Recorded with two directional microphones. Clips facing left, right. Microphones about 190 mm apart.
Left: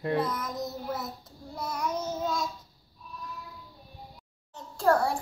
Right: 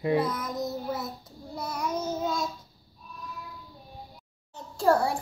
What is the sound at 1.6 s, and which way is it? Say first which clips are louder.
Child singing: right 1 dB; centre (ahead or behind).